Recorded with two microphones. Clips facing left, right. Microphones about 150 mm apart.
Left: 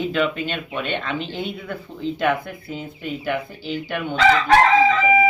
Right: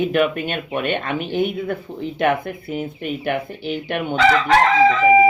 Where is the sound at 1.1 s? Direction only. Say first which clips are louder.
Right 6 dB; 15° right (ahead or behind).